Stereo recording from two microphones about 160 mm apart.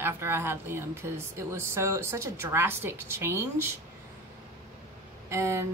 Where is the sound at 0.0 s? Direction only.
15° right (ahead or behind).